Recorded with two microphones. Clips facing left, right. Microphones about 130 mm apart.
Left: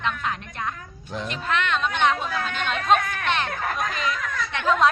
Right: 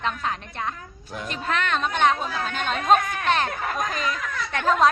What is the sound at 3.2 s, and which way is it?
A child's voice, 40° right (ahead or behind).